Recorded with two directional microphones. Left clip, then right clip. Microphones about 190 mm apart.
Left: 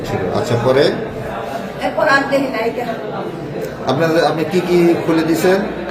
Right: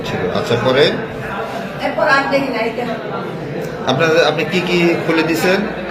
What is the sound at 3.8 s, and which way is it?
A man's voice, 55° left (ahead or behind).